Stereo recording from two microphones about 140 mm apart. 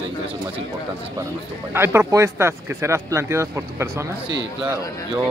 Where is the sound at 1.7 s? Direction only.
15° right (ahead or behind).